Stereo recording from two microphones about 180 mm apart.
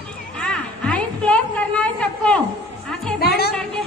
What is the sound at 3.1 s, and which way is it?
Music, 60° left (ahead or behind).